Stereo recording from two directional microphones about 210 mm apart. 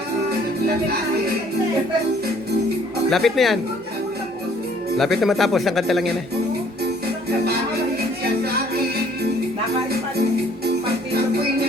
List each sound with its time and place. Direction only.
3.1 s a man's voice: centre (ahead or behind)
4.9 s a man's voice: centre (ahead or behind)